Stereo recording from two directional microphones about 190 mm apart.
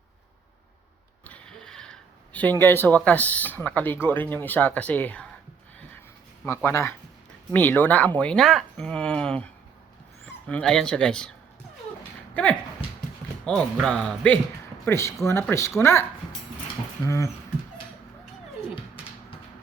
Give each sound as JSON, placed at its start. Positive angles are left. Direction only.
{"t": 1.3, "sound": "speech", "side_deg": 5}
{"t": 6.4, "sound": "speech", "side_deg": 10}
{"t": 12.3, "sound": "speech", "side_deg": 5}
{"t": 14.8, "sound": "speech", "side_deg": 15}
{"t": 17.1, "sound": "speech", "side_deg": 15}